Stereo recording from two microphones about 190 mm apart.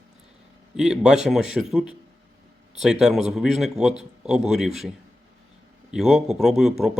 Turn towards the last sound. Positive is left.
turn(degrees=0)  # may be behind; listen again after turning